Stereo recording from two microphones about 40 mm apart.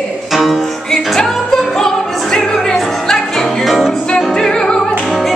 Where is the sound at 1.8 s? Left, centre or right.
Centre.